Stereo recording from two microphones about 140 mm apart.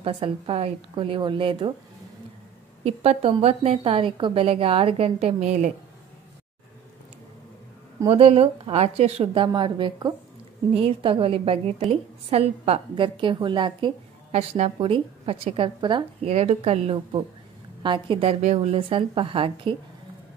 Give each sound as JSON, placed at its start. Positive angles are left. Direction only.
{"t": 0.0, "sound": "a woman's voice", "side_deg": -40}
{"t": 2.8, "sound": "a woman's voice", "side_deg": -45}
{"t": 8.1, "sound": "a woman's voice", "side_deg": -45}
{"t": 16.3, "sound": "a woman's voice", "side_deg": -50}
{"t": 18.4, "sound": "a woman's voice", "side_deg": -55}